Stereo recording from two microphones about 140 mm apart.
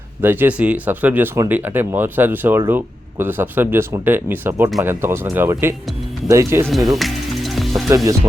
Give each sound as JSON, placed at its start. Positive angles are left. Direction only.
{"t": 0.2, "sound": "speech", "side_deg": -15}
{"t": 6.7, "sound": "music", "side_deg": 0}
{"t": 7.9, "sound": "speech", "side_deg": -25}